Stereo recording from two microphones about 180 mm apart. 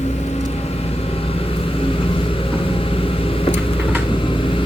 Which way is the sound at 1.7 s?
30° left (ahead or behind).